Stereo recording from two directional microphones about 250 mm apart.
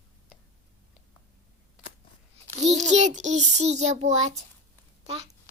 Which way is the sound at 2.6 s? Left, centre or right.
Right.